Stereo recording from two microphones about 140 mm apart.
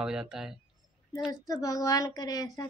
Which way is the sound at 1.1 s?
25° left (ahead or behind).